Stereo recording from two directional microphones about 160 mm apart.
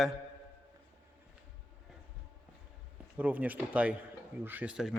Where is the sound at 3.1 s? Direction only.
10° right (ahead or behind).